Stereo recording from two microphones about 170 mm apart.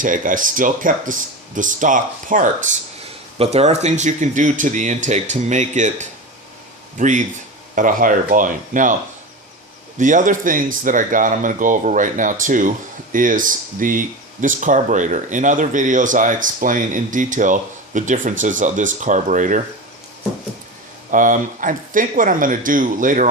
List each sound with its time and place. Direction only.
0.0 s speech: 50° right (ahead or behind)
3.3 s speech: 35° right (ahead or behind)
10.0 s speech: 50° right (ahead or behind)
21.1 s speech: 50° right (ahead or behind)